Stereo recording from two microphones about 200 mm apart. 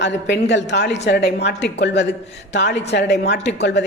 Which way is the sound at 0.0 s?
60° left (ahead or behind).